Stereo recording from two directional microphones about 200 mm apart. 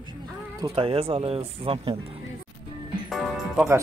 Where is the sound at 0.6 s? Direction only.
25° right (ahead or behind).